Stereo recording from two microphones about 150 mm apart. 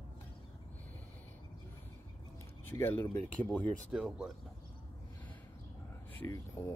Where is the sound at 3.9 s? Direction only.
5° right (ahead or behind).